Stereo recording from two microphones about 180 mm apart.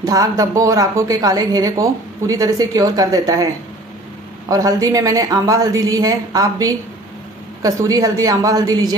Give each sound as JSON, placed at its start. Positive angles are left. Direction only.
{"t": 0.0, "sound": "a woman's voice", "side_deg": -20}
{"t": 4.5, "sound": "a woman's voice", "side_deg": -20}